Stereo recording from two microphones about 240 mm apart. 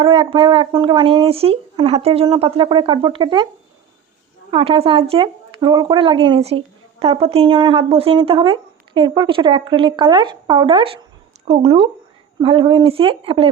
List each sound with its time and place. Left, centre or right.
0.0 s speech: right
4.5 s speech: right